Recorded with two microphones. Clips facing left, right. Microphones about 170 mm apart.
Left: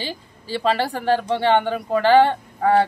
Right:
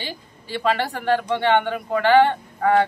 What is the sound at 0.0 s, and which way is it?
Speech, 30° left (ahead or behind).